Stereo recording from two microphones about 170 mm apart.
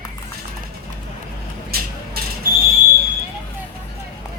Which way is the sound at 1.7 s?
65° right (ahead or behind).